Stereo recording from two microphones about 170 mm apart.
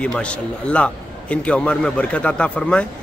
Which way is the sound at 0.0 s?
5° left (ahead or behind).